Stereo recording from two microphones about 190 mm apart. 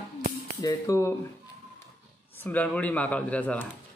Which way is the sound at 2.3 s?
10° left (ahead or behind).